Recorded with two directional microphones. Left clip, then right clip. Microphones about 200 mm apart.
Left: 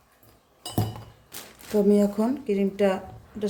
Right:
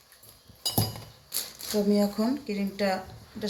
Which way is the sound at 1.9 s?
70° left (ahead or behind).